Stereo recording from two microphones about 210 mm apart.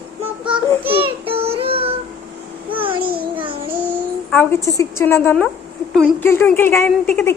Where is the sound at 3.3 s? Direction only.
25° right (ahead or behind).